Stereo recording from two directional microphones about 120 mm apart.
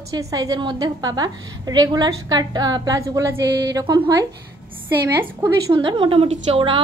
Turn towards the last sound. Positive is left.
turn(degrees=-45)  # may be behind; listen again after turning